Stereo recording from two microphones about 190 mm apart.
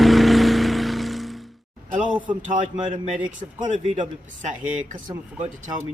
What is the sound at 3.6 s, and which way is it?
Speech, 40° right (ahead or behind).